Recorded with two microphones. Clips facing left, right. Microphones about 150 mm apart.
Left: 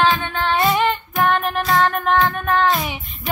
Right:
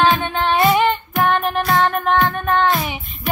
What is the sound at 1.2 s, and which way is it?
Music, 5° right (ahead or behind).